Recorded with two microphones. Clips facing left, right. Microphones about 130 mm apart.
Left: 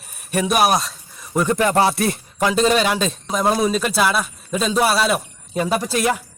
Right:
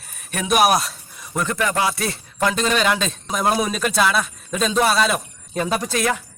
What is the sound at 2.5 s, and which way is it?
Speech, 35° left (ahead or behind).